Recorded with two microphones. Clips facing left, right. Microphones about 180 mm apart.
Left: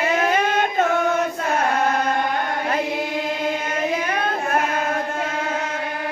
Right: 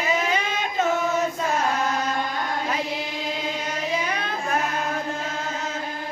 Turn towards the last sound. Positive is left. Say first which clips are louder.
# left 4 dB
turn(degrees=55)  # may be behind; listen again after turning